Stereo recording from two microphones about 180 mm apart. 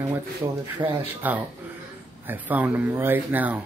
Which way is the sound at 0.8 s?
25° right (ahead or behind).